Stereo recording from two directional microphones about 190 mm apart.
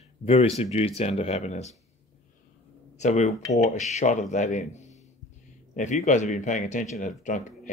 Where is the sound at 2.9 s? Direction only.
35° left (ahead or behind).